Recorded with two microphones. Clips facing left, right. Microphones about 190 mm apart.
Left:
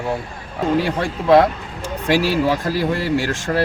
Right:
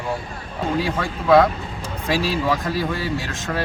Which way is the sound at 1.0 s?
30° left (ahead or behind).